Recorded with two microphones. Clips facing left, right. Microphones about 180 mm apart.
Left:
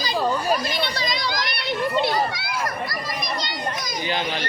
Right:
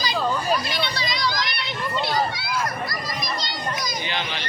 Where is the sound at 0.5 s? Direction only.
50° left (ahead or behind).